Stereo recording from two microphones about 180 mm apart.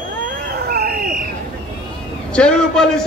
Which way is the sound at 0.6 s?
60° right (ahead or behind).